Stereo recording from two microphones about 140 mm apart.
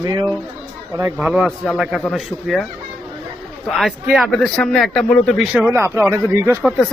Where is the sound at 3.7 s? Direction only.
Centre (ahead or behind).